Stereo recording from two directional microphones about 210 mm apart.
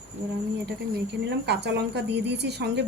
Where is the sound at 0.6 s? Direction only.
55° right (ahead or behind).